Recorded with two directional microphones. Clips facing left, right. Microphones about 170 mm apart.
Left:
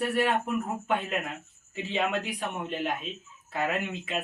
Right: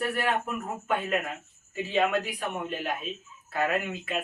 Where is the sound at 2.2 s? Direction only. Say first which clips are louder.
Right 1 dB; 20° left (ahead or behind).